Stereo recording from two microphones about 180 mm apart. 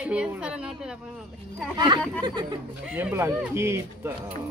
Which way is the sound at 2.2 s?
25° right (ahead or behind).